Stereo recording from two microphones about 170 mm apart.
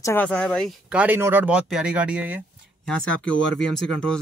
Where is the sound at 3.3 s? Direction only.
90° left.